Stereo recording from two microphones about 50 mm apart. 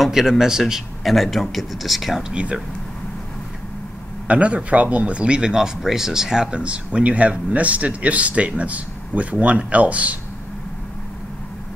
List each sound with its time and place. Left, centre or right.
0.0 s speech: centre
2.2 s speech: right
4.3 s speech: right
6.6 s speech: right